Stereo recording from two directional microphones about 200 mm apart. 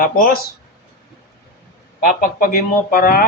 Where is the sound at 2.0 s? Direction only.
45° left (ahead or behind).